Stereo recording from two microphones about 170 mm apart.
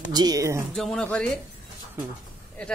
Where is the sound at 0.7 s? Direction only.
5° left (ahead or behind).